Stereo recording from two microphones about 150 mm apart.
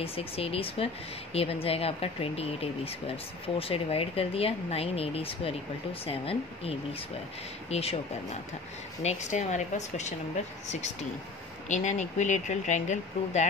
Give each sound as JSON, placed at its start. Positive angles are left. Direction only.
{"t": 0.0, "sound": "speech", "side_deg": 40}